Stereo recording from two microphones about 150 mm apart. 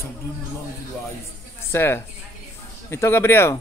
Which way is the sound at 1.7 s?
15° left (ahead or behind).